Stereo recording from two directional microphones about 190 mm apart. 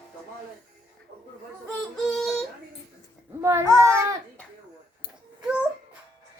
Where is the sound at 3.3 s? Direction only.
15° right (ahead or behind).